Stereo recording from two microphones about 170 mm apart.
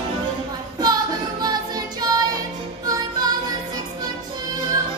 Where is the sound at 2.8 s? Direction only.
20° right (ahead or behind).